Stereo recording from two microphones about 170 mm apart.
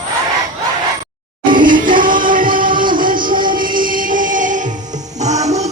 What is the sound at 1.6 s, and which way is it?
Music, 50° right (ahead or behind).